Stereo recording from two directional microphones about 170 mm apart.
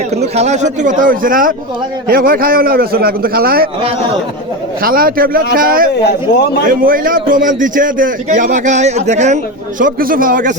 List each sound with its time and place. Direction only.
0.1 s a man's voice: 40° right (ahead or behind); by 3.7 s 60° right (ahead or behind)
4.8 s a man's voice: 60° right (ahead or behind)